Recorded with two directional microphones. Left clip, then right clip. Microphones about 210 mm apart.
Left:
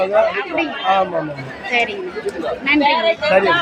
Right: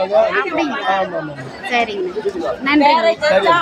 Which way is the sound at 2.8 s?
45° right (ahead or behind).